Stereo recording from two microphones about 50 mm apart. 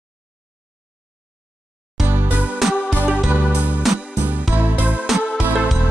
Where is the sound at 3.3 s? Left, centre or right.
Right.